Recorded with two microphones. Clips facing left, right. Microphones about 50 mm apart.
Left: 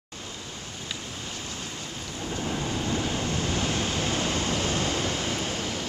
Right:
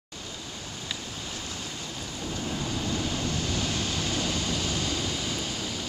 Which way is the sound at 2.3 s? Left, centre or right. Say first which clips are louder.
Left 3 dB; centre.